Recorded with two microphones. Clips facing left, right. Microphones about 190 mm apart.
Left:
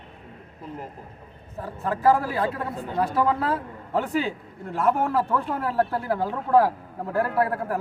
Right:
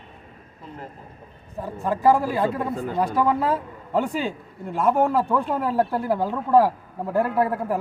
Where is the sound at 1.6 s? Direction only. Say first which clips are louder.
Right 2 dB; 15° right (ahead or behind).